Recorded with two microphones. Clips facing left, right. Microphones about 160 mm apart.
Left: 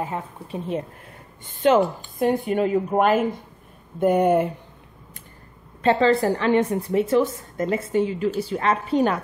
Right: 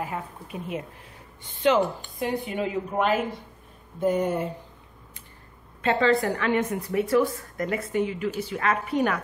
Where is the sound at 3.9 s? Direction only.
60° left (ahead or behind).